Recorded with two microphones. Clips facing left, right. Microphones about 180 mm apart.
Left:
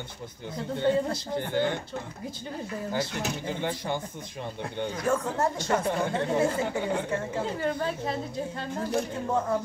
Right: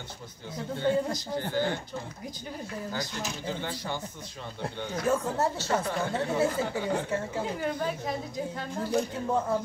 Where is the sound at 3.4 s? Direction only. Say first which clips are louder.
Left 3 dB; 15° left (ahead or behind).